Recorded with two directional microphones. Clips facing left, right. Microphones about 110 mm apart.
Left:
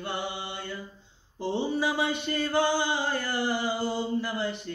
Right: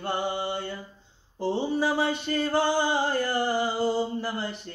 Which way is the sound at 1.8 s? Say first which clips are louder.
Right 2 dB; 40° right (ahead or behind).